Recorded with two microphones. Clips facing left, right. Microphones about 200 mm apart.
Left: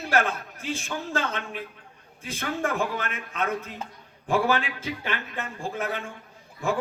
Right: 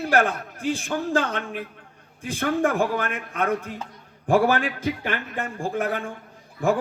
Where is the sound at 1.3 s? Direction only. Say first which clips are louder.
Right 4 dB; 50° right (ahead or behind).